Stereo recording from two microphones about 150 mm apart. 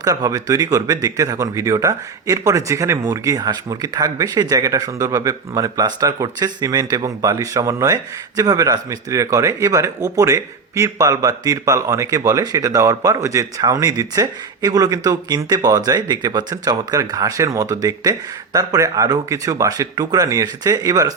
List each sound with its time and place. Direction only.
0.0 s speech: 25° right (ahead or behind)